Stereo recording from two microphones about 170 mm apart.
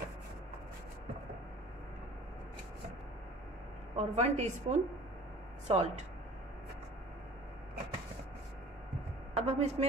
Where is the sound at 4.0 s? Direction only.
40° right (ahead or behind).